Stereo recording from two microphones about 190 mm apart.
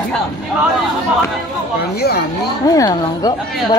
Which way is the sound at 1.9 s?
55° left (ahead or behind).